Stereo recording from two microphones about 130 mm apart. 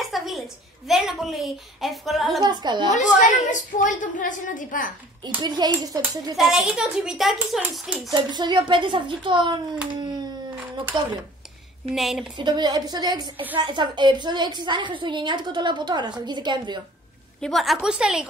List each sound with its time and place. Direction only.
0.0 s a woman's voice: centre (ahead or behind)
2.4 s a woman's voice: 35° right (ahead or behind)
2.9 s a woman's voice: 75° left (ahead or behind); by 4.9 s 90° left
5.4 s a woman's voice: 35° right (ahead or behind)
6.3 s a child's voice: 5° right (ahead or behind)
8.1 s a woman's voice: 35° right (ahead or behind)
9.9 s a sound: 35° right (ahead or behind)
10.9 s a woman's voice: 35° right (ahead or behind)
11.9 s a child's voice: centre (ahead or behind)
12.4 s a woman's voice: 35° right (ahead or behind)
17.4 s a child's voice: centre (ahead or behind)